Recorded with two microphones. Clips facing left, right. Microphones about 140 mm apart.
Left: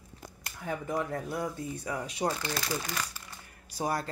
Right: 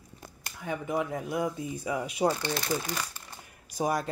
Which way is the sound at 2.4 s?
25° right (ahead or behind).